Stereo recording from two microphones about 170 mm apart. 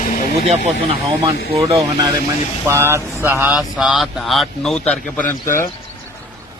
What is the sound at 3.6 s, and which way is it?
A man's voice, 5° right (ahead or behind).